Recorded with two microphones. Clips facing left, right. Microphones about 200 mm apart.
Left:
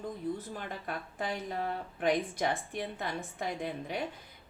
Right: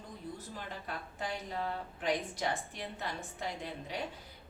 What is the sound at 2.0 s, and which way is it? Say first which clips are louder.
A woman's voice: left 5 dB; 55° left (ahead or behind).